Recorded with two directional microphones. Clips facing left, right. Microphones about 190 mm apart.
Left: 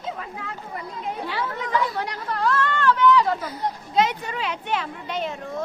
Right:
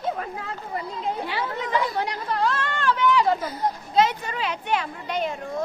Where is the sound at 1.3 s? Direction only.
25° right (ahead or behind).